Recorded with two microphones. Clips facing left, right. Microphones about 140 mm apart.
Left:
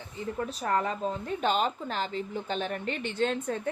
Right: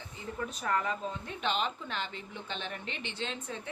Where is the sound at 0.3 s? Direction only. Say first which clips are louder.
Left 4 dB; 35° left (ahead or behind).